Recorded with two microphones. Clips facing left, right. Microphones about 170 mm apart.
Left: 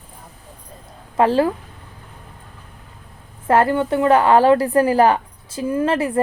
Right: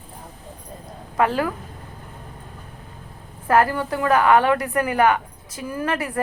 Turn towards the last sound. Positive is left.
turn(degrees=25)  # may be behind; listen again after turning